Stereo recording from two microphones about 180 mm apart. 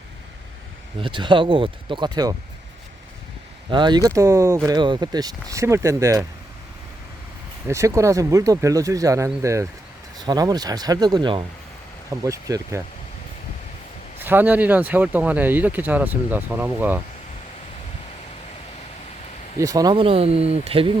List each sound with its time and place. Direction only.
0.9 s speech: 25° right (ahead or behind)
3.7 s speech: 25° right (ahead or behind)
7.7 s speech: 15° right (ahead or behind)
14.2 s speech: 10° right (ahead or behind)
19.5 s speech: 20° right (ahead or behind)